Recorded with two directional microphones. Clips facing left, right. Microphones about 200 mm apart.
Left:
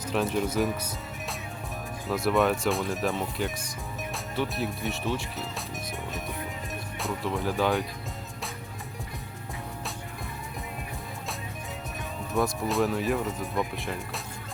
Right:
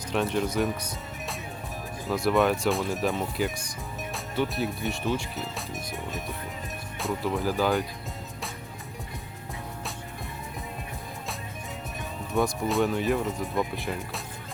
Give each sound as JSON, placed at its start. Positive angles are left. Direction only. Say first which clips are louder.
{"t": 0.1, "sound": "speech", "louder": "even", "side_deg": 0}
{"t": 2.0, "sound": "speech", "louder": "right 1 dB", "side_deg": 0}
{"t": 12.3, "sound": "speech", "louder": "right 1 dB", "side_deg": 0}